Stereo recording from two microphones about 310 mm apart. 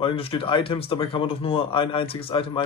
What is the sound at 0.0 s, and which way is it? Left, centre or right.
Speech, centre.